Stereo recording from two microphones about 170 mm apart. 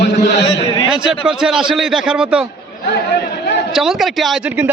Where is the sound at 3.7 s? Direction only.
Centre (ahead or behind).